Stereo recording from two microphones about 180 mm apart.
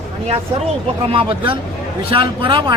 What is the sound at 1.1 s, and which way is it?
Speech, 30° right (ahead or behind).